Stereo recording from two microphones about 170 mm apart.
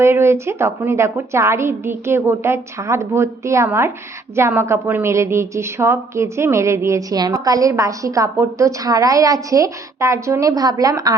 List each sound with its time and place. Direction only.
0.0 s a woman's voice: 15° right (ahead or behind)